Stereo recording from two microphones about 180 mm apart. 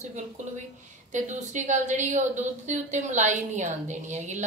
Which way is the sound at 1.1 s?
40° right (ahead or behind).